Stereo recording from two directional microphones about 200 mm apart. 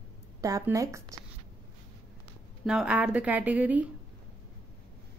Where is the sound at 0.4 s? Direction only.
15° right (ahead or behind).